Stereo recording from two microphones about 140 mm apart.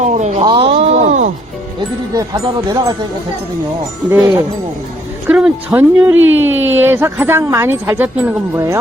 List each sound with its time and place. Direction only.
0.0 s speech: 55° right (ahead or behind)
0.4 s speech: 35° right (ahead or behind)
0.8 s a sound: 55° right (ahead or behind)
2.1 s speech: 30° right (ahead or behind)
4.1 s speech: 20° right (ahead or behind)